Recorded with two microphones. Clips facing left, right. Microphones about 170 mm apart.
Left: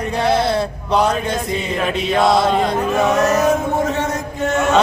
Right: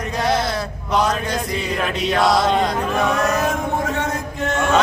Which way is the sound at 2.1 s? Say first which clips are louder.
Left 2 dB; 25° left (ahead or behind).